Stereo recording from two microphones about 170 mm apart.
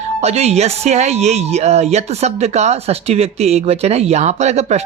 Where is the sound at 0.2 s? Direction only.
40° right (ahead or behind).